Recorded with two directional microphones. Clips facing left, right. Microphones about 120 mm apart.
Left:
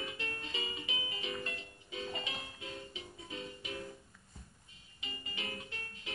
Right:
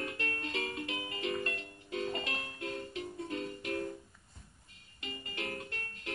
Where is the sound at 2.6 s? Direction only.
60° right (ahead or behind).